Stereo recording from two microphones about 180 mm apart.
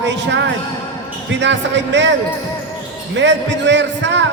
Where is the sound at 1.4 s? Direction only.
80° right.